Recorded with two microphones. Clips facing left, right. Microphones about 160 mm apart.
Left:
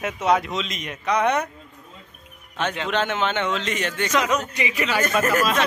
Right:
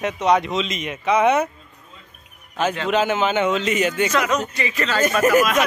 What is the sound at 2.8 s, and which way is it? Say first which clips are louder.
A man's voice: right 4 dB; 5° right (ahead or behind).